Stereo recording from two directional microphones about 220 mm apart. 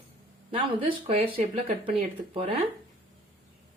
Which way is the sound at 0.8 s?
25° right (ahead or behind).